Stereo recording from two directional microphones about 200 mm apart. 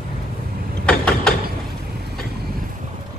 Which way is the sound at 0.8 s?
5° left (ahead or behind).